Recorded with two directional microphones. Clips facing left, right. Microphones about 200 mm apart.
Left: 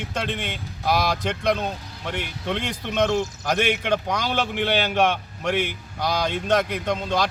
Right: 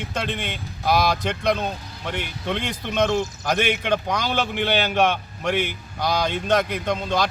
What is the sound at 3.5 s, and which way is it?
Speech, 40° left (ahead or behind).